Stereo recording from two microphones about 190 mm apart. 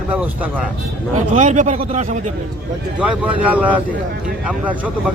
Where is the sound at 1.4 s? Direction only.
40° right (ahead or behind).